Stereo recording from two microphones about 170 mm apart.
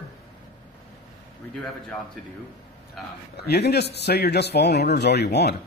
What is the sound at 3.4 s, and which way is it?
Speech, 70° left (ahead or behind).